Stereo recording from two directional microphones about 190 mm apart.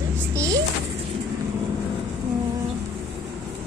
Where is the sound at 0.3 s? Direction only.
15° right (ahead or behind).